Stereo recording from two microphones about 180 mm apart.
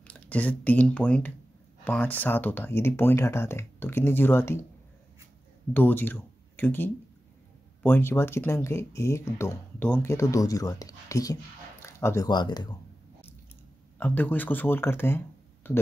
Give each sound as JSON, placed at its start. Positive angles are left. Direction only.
{"t": 0.0, "sound": "speech", "side_deg": 5}
{"t": 5.7, "sound": "speech", "side_deg": 10}
{"t": 13.9, "sound": "speech", "side_deg": 10}